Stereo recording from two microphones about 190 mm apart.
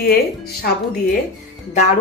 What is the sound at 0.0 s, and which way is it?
Speech, 55° left (ahead or behind).